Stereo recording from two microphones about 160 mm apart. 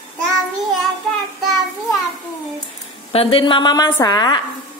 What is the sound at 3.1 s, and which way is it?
Speech, 35° left (ahead or behind).